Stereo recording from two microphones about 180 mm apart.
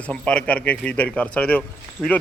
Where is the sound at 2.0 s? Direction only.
5° right (ahead or behind).